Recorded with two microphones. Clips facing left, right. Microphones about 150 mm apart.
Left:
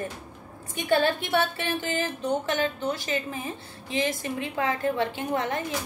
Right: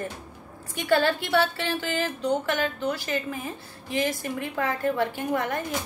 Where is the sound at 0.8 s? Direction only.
20° left (ahead or behind).